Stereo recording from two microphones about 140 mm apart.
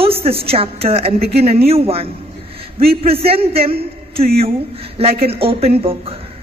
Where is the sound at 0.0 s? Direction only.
45° right (ahead or behind).